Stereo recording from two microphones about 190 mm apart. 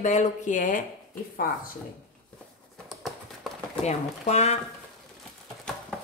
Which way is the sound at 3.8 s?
35° left (ahead or behind).